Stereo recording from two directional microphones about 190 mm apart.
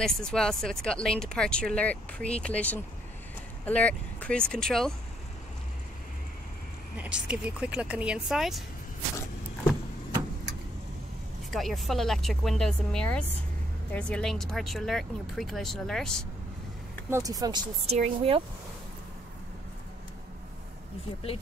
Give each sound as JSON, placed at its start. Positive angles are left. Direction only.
{"t": 0.0, "sound": "speech", "side_deg": 5}
{"t": 7.0, "sound": "speech", "side_deg": -5}
{"t": 11.5, "sound": "speech", "side_deg": 0}
{"t": 17.1, "sound": "speech", "side_deg": -20}
{"t": 17.8, "sound": "speech", "side_deg": -30}